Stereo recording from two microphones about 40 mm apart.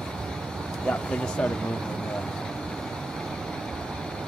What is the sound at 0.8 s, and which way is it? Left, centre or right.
Speech, left.